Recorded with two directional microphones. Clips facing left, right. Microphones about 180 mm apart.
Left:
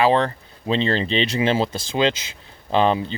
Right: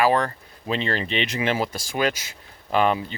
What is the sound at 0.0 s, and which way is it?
Speech, 25° left (ahead or behind).